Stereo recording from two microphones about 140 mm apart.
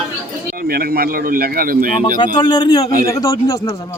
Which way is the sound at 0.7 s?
90° right.